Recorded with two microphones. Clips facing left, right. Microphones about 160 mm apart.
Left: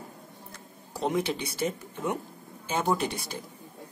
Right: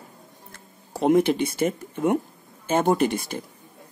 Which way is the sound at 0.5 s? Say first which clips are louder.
Right 6 dB; 50° right (ahead or behind).